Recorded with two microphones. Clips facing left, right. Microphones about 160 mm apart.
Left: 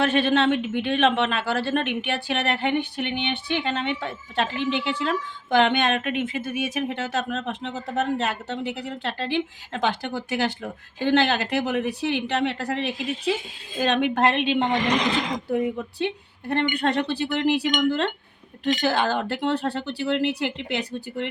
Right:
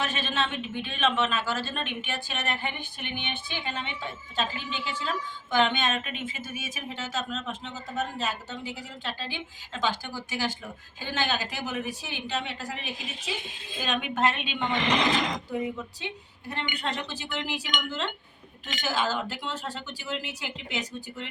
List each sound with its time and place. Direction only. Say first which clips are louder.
0.0 s speech: left 10 dB; 60° left (ahead or behind)